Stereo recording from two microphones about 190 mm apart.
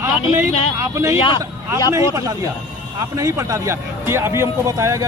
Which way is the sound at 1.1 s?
25° left (ahead or behind).